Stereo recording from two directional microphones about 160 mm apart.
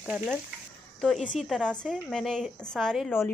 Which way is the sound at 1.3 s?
Centre (ahead or behind).